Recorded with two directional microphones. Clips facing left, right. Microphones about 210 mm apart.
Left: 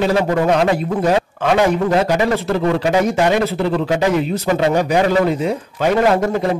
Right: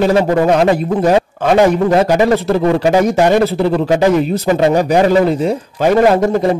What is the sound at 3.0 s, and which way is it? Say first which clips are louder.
A man's voice: right 4 dB; 40° right (ahead or behind).